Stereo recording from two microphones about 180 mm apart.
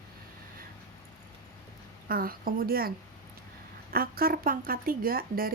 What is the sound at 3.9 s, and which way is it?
A woman's voice, 55° right (ahead or behind).